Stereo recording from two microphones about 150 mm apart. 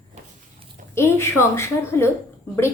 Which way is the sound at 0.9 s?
15° left (ahead or behind).